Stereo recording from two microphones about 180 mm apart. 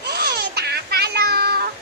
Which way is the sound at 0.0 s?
65° right (ahead or behind).